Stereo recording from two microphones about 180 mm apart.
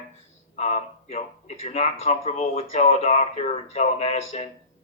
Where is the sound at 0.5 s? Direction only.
35° left (ahead or behind).